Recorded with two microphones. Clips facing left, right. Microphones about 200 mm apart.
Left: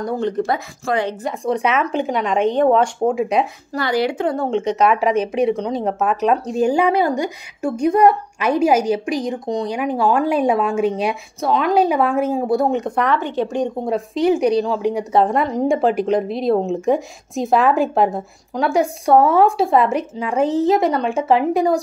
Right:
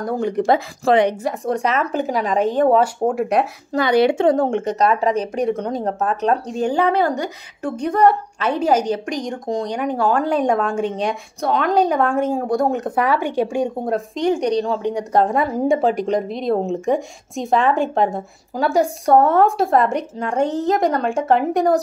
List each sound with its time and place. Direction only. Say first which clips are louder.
0.0 s speech: even; 10° right (ahead or behind)
0.5 s a woman's voice: right 5 dB; 25° right (ahead or behind)
1.2 s speech: left 1 dB; centre (ahead or behind)
3.7 s a woman's voice: right 4 dB; 20° right (ahead or behind)
4.6 s speech: left 2 dB; centre (ahead or behind)
13.8 s speech: left 2 dB; centre (ahead or behind)